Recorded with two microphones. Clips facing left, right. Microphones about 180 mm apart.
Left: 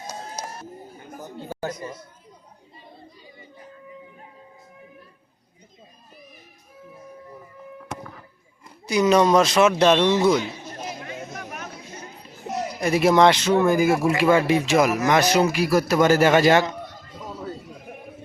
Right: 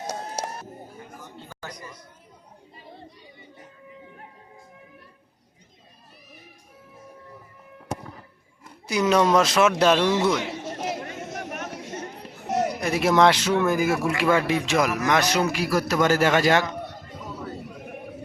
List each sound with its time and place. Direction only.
0.1 s music: 85° right
1.1 s a sound: 40° left (ahead or behind)
1.7 s a man's voice: 25° left (ahead or behind)
8.9 s speech: 5° right (ahead or behind)
10.3 s chatter: 85° right; by 12.7 s 60° right (ahead or behind)
12.8 s speech: centre (ahead or behind)
16.2 s a man's voice: 20° left (ahead or behind)